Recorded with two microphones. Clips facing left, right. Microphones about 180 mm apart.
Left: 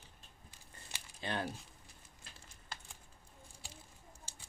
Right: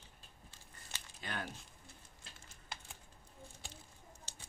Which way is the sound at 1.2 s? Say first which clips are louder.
Left 5 dB; 30° left (ahead or behind).